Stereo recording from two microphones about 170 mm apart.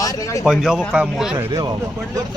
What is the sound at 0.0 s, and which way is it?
Speech, 20° left (ahead or behind).